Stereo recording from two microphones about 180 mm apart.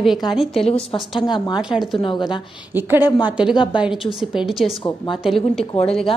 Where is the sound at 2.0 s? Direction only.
25° left (ahead or behind).